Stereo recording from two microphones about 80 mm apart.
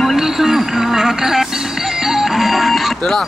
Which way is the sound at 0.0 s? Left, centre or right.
Centre.